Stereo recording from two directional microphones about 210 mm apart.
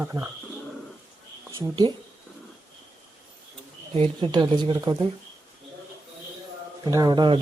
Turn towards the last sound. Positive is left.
turn(degrees=-20)  # may be behind; listen again after turning